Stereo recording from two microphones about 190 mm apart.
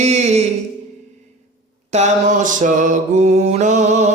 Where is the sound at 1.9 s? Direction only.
35° right (ahead or behind).